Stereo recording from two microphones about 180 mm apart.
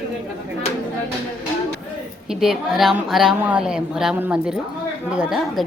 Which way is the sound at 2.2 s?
5° right (ahead or behind).